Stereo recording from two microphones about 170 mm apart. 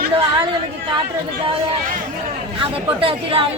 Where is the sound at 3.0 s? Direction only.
30° right (ahead or behind).